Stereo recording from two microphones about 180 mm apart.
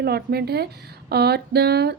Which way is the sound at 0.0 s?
60° right (ahead or behind).